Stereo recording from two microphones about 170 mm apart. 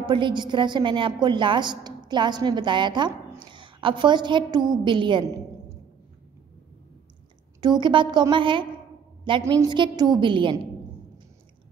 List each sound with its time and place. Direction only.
0.0 s a woman's voice: 30° right (ahead or behind)
7.6 s a woman's voice: 25° right (ahead or behind)
9.4 s a woman's voice: 20° right (ahead or behind)